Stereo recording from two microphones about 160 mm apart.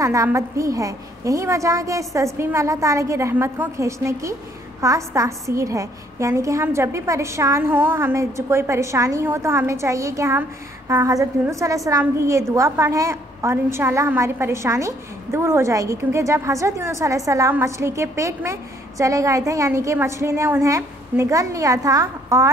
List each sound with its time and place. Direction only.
0.0 s a woman's voice: 20° right (ahead or behind)